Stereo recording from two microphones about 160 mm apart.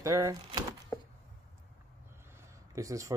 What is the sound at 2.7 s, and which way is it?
Speech, 20° right (ahead or behind).